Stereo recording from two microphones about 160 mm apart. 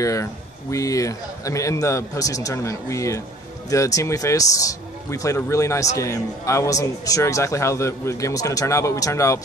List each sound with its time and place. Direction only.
0.0 s a man's voice: 20° left (ahead or behind)